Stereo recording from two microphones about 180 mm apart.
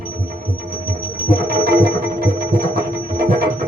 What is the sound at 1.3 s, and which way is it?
Music, 55° right (ahead or behind).